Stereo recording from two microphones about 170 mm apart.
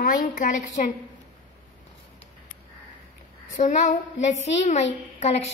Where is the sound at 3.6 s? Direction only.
45° left (ahead or behind).